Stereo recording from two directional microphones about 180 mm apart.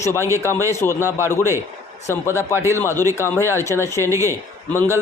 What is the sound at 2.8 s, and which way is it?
Speech, 15° left (ahead or behind).